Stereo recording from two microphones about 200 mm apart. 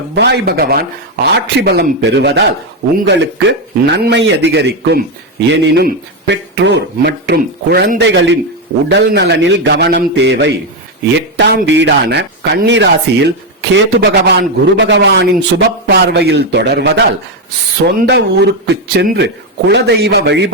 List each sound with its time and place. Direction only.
0.1 s speech: 55° right (ahead or behind)
3.8 s speech: 60° right (ahead or behind)